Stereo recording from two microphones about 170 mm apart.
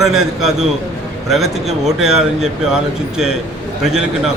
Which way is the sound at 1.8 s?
5° right (ahead or behind).